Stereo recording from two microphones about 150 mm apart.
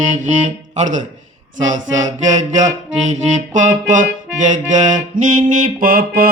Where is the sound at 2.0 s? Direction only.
55° right (ahead or behind).